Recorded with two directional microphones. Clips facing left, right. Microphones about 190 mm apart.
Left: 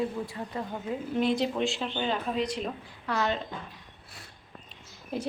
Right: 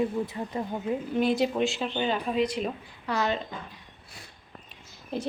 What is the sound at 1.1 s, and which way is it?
A woman's voice, 5° right (ahead or behind).